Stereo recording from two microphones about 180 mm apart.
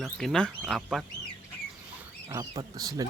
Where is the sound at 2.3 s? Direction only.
20° right (ahead or behind).